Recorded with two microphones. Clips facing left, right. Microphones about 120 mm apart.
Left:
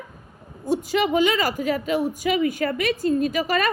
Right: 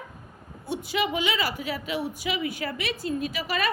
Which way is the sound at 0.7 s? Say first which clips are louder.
Left 6 dB; 40° left (ahead or behind).